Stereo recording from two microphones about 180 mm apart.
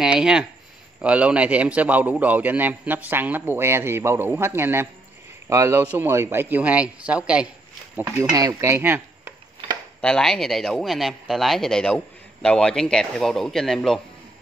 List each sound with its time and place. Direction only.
0.0 s a man's voice: 5° right (ahead or behind)
8.0 s speech: 15° right (ahead or behind)
10.0 s speech: 5° left (ahead or behind)